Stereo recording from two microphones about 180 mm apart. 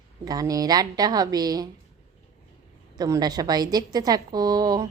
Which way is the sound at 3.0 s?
20° right (ahead or behind).